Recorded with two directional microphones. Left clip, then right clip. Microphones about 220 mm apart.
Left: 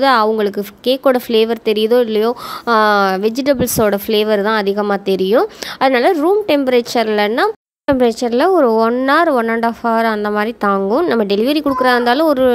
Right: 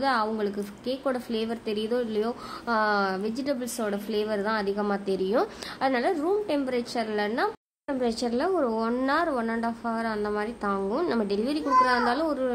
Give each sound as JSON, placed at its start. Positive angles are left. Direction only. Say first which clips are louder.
{"t": 0.0, "sound": "a woman's voice", "louder": "left 14 dB", "side_deg": 40}